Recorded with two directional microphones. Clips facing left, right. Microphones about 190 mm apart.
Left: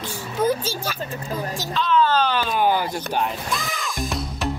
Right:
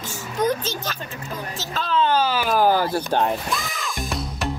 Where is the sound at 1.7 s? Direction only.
45° right (ahead or behind).